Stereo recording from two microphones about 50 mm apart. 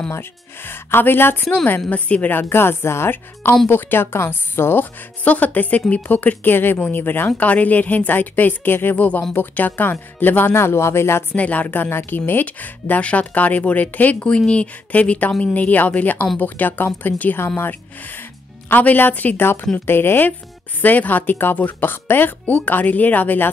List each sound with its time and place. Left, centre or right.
0.7 s speech: left
1.4 s a woman's voice: centre
2.3 s speech: left
3.6 s speech: left
5.2 s speech: left
6.0 s speech: left
7.4 s speech: left
8.9 s speech: left
11.3 s speech: left
12.4 s speech: left
14.2 s a woman's voice: left